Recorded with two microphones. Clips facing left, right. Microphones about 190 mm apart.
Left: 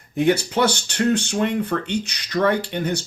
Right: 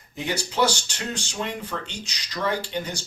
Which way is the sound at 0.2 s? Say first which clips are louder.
Left 6 dB; 60° left (ahead or behind).